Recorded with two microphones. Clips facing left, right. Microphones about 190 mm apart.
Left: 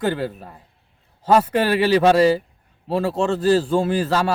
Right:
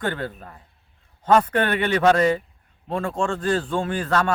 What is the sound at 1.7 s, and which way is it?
Speech, 30° left (ahead or behind).